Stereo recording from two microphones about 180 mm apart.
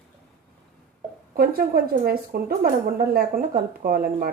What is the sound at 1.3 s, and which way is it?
A woman's voice, 55° right (ahead or behind).